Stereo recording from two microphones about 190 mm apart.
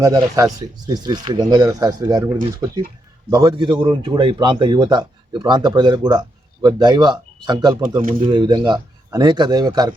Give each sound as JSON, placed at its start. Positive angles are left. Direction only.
{"t": 0.0, "sound": "a man's voice", "side_deg": -20}